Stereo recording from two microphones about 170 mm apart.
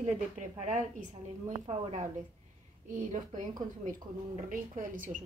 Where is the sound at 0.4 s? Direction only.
45° right (ahead or behind).